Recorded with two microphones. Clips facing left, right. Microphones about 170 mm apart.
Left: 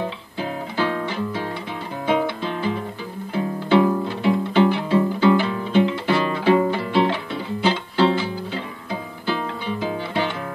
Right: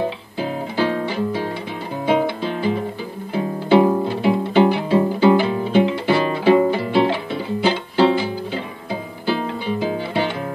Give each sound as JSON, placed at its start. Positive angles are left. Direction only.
{"t": 0.7, "sound": "music", "side_deg": -30}
{"t": 1.0, "sound": "music", "side_deg": -10}
{"t": 3.8, "sound": "music", "side_deg": -35}
{"t": 4.2, "sound": "music", "side_deg": -15}
{"t": 9.8, "sound": "music", "side_deg": -10}